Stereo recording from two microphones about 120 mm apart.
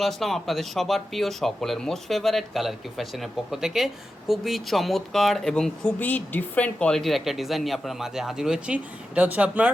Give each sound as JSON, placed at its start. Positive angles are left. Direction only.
{"t": 0.0, "sound": "speech", "side_deg": 0}